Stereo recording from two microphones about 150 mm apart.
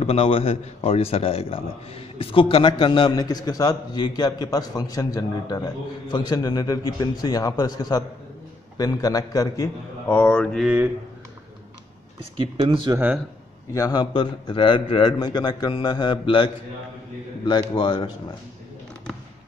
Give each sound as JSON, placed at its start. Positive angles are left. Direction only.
{"t": 0.0, "sound": "a man's voice", "side_deg": 40}
{"t": 10.0, "sound": "speech", "side_deg": 10}
{"t": 12.4, "sound": "speech", "side_deg": -35}
{"t": 13.7, "sound": "a man's voice", "side_deg": 25}
{"t": 17.5, "sound": "a man's voice", "side_deg": 30}